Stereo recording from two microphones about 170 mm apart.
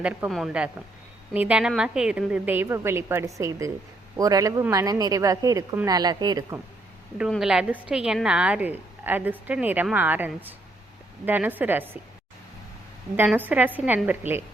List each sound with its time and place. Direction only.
0.0 s a woman's voice: 5° right (ahead or behind); by 6.6 s 20° right (ahead or behind)
7.2 s a woman's voice: centre (ahead or behind)
13.1 s a woman's voice: 10° right (ahead or behind)